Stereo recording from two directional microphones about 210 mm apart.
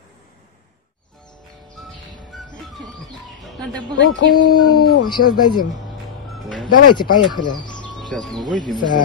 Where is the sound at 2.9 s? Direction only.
Centre (ahead or behind).